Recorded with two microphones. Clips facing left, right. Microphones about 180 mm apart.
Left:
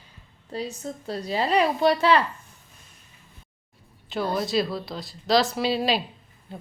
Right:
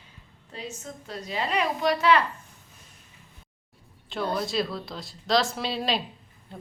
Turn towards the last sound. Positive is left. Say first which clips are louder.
# left 5 dB
turn(degrees=5)  # may be behind; listen again after turning